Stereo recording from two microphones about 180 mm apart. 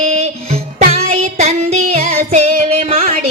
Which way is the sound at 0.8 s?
35° right (ahead or behind).